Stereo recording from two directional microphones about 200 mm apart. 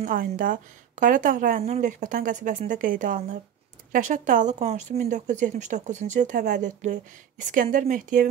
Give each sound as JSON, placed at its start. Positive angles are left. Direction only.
{"t": 0.0, "sound": "speech", "side_deg": -45}